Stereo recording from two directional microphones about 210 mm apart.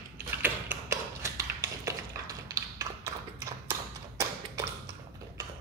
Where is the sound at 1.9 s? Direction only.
15° right (ahead or behind).